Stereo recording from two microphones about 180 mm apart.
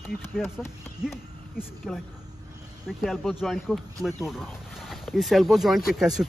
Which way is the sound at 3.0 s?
Centre (ahead or behind).